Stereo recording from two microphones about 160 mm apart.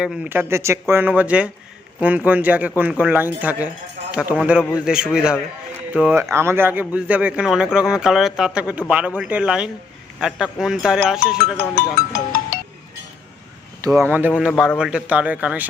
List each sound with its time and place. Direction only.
0.0 s a man's voice: 10° right (ahead or behind)
11.5 s speech: 15° left (ahead or behind)
12.1 s music: 60° left (ahead or behind)
13.8 s a man's voice: 15° right (ahead or behind)